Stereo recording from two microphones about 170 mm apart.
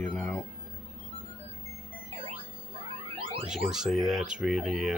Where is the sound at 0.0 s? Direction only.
5° left (ahead or behind).